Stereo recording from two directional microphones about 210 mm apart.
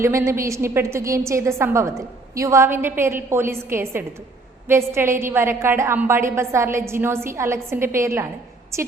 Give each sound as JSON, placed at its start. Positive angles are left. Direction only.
{"t": 0.0, "sound": "a woman's voice", "side_deg": -15}